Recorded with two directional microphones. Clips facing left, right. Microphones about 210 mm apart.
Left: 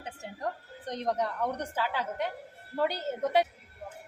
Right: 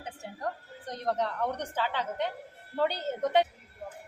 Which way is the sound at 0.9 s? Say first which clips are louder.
Even; 15° left (ahead or behind).